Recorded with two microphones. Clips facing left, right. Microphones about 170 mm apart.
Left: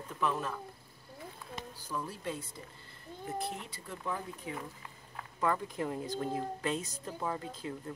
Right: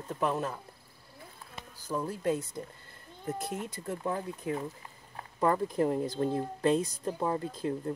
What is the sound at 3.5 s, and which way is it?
Speech, 45° right (ahead or behind).